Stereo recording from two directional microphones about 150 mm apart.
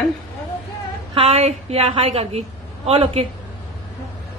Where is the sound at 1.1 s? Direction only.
40° right (ahead or behind).